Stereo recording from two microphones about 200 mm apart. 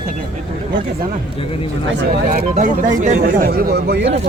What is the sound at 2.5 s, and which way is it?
Speech, 40° right (ahead or behind).